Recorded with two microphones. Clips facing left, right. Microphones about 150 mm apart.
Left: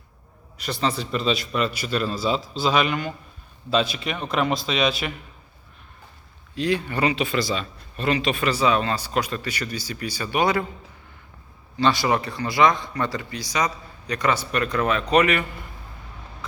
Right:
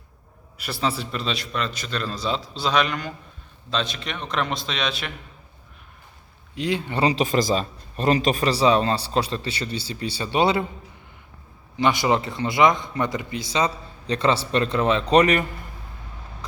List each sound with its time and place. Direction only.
0.5 s a man's voice: 5° right (ahead or behind)
6.5 s speech: 20° right (ahead or behind)
7.1 s speech: 40° right (ahead or behind)
11.8 s speech: 20° right (ahead or behind); by 15.4 s 35° right (ahead or behind)